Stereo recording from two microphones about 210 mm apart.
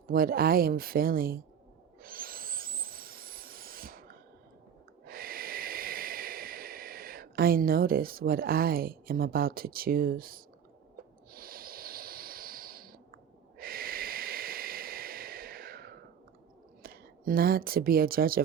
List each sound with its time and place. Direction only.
0.1 s speech: 45° right (ahead or behind)
2.0 s owl: 45° right (ahead or behind)
5.0 s snort: 45° right (ahead or behind)
16.8 s speech: 45° right (ahead or behind)